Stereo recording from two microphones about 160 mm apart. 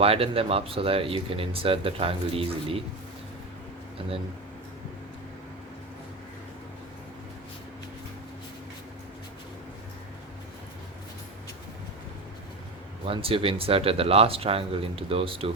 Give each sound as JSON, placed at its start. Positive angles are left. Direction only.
{"t": 0.0, "sound": "speech", "side_deg": -35}
{"t": 13.1, "sound": "speech", "side_deg": -35}